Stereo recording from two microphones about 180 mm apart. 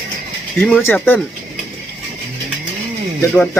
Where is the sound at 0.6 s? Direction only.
Centre (ahead or behind).